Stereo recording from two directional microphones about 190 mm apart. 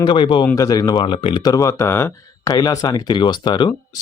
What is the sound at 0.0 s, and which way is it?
Speech, 25° left (ahead or behind).